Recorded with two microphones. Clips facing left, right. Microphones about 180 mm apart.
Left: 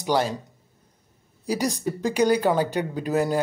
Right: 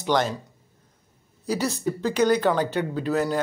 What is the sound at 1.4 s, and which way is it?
Speech, 15° left (ahead or behind).